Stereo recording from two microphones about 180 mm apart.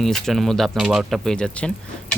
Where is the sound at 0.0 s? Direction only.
Centre (ahead or behind).